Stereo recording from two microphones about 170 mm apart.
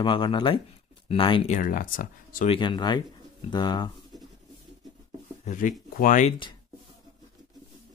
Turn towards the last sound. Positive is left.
turn(degrees=50)  # may be behind; listen again after turning